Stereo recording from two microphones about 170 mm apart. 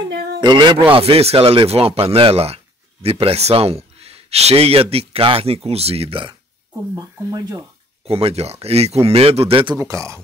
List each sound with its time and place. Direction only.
0.1 s a sound: 65° right (ahead or behind)
0.4 s speech: 25° right (ahead or behind)
7.0 s speech: 20° right (ahead or behind)
8.0 s speech: 35° right (ahead or behind)
9.8 s speech: 20° right (ahead or behind)